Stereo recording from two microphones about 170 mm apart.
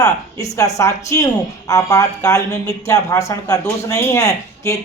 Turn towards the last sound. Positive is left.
turn(degrees=20)  # may be behind; listen again after turning